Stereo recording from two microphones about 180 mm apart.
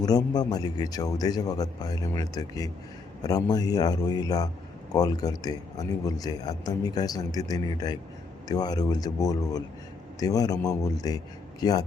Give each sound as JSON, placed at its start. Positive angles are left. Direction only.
{"t": 0.0, "sound": "a man's voice", "side_deg": 20}